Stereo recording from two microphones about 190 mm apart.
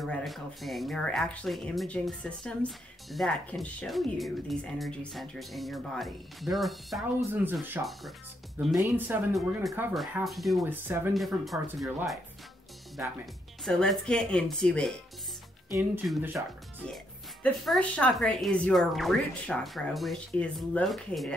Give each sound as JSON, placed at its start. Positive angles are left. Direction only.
{"t": 0.0, "sound": "speech", "side_deg": 0}
{"t": 7.8, "sound": "speech", "side_deg": -10}
{"t": 9.3, "sound": "speech", "side_deg": 0}
{"t": 10.6, "sound": "speech", "side_deg": -10}
{"t": 13.7, "sound": "speech", "side_deg": 5}
{"t": 16.8, "sound": "speech", "side_deg": 5}